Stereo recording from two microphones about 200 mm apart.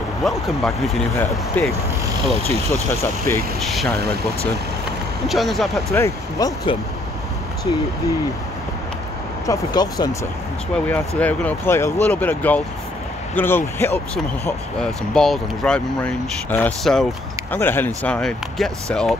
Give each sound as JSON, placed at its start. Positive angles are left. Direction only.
{"t": 0.2, "sound": "speech", "side_deg": 0}
{"t": 2.3, "sound": "speech", "side_deg": -30}
{"t": 2.9, "sound": "speech", "side_deg": 15}
{"t": 3.5, "sound": "speech", "side_deg": 0}
{"t": 4.0, "sound": "speech", "side_deg": -50}
{"t": 5.3, "sound": "speech", "side_deg": 0}
{"t": 5.9, "sound": "speech", "side_deg": 15}
{"t": 9.5, "sound": "speech", "side_deg": 20}
{"t": 10.9, "sound": "speech", "side_deg": 5}